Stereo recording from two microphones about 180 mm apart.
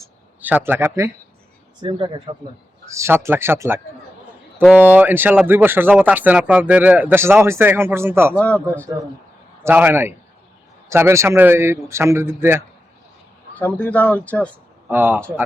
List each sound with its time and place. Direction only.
0.4 s speech: 10° right (ahead or behind)
1.8 s speech: 25° right (ahead or behind)
2.9 s speech: 15° right (ahead or behind)
8.4 s speech: 10° left (ahead or behind)
9.6 s speech: 10° right (ahead or behind)
13.7 s speech: 10° left (ahead or behind)
14.8 s speech: 10° right (ahead or behind)